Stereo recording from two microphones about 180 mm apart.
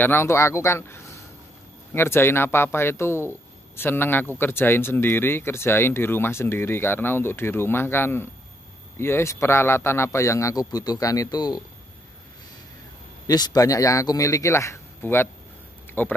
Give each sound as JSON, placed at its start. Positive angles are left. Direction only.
{"t": 0.0, "sound": "speech", "side_deg": 15}
{"t": 13.3, "sound": "speech", "side_deg": 20}